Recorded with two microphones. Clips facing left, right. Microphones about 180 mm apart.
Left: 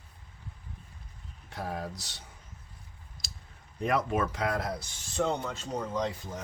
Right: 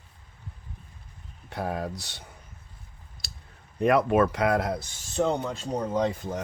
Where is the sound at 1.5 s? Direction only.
65° right (ahead or behind).